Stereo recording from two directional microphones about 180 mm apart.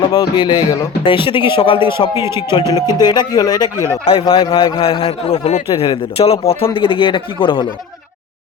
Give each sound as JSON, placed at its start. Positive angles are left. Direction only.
{"t": 0.1, "sound": "speech", "side_deg": 25}
{"t": 2.1, "sound": "a man's voice", "side_deg": -15}
{"t": 2.5, "sound": "speech", "side_deg": 25}
{"t": 4.0, "sound": "a man's voice", "side_deg": 30}